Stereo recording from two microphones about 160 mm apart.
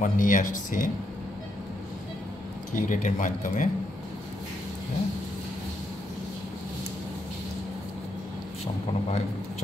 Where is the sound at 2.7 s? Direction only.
50° left (ahead or behind).